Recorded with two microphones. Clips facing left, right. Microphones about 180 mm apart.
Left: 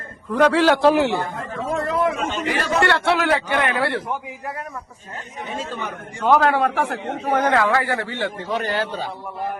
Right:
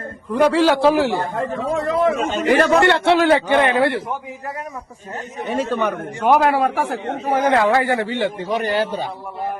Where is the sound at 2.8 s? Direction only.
20° right (ahead or behind).